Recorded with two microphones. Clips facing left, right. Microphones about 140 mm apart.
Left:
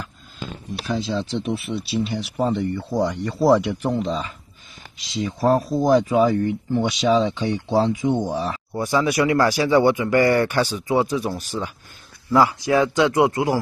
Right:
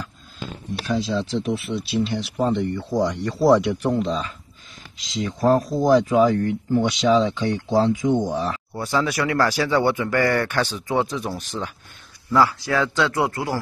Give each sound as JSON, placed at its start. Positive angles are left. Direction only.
{"t": 1.1, "sound": "speech", "side_deg": 0}
{"t": 12.3, "sound": "speech", "side_deg": 15}